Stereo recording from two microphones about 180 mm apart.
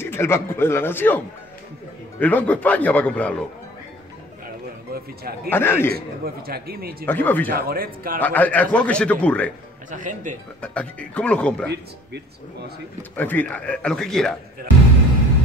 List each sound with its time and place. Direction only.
0.0 s a man's voice: 15° left (ahead or behind)
4.9 s speech: 60° right (ahead or behind)
5.5 s a man's voice: 10° left (ahead or behind)
5.9 s speech: 60° right (ahead or behind)
7.1 s a man's voice: 10° left (ahead or behind)
7.4 s speech: 55° right (ahead or behind)
8.2 s a man's voice: 10° left (ahead or behind)
9.8 s speech: 45° right (ahead or behind)
10.6 s a man's voice: 5° left (ahead or behind)
13.1 s a man's voice: 10° left (ahead or behind)